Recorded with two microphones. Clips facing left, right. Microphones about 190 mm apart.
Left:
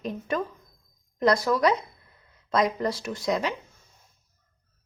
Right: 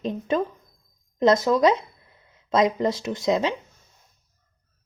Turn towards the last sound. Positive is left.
turn(degrees=-25)  # may be behind; listen again after turning